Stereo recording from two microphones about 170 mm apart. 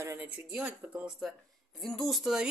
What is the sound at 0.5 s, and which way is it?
Speech, 5° right (ahead or behind).